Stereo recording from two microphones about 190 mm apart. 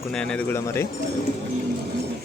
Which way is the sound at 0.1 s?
5° left (ahead or behind).